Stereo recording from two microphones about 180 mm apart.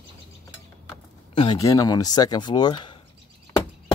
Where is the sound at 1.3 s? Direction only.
25° left (ahead or behind).